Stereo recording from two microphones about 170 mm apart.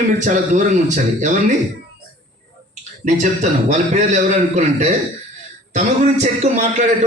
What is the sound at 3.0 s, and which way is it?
Speech, 45° right (ahead or behind).